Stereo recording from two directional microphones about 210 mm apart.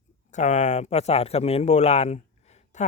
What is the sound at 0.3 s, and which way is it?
A man's voice, 35° left (ahead or behind).